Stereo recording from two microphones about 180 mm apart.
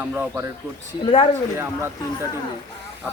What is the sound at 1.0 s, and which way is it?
Speech, 30° left (ahead or behind).